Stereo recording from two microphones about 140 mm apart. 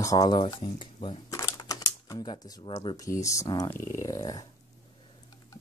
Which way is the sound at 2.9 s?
25° left (ahead or behind).